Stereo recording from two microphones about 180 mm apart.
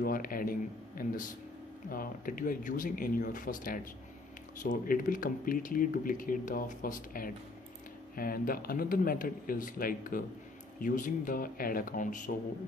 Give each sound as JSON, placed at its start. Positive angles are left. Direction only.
{"t": 0.0, "sound": "speech", "side_deg": 50}